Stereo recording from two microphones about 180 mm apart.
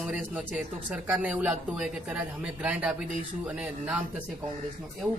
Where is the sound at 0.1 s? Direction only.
5° right (ahead or behind).